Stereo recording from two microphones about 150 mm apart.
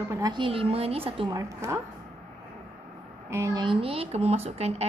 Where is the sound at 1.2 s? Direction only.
20° right (ahead or behind).